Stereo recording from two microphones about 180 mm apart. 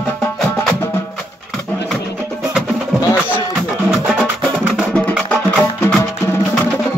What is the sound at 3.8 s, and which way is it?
Music, 5° right (ahead or behind).